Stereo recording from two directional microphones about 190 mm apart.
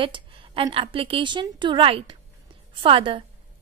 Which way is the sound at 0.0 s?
30° right (ahead or behind).